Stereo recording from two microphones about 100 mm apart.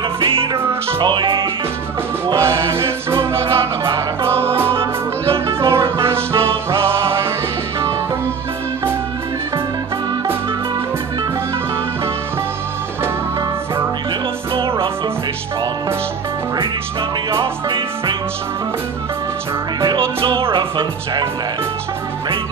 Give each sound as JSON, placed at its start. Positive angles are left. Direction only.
{"t": 1.0, "sound": "music", "side_deg": -50}
{"t": 2.3, "sound": "music", "side_deg": -25}
{"t": 17.3, "sound": "music", "side_deg": -55}
{"t": 20.2, "sound": "music", "side_deg": -60}
{"t": 20.5, "sound": "music", "side_deg": -50}